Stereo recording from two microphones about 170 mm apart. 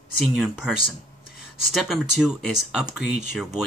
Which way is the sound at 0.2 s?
Centre (ahead or behind).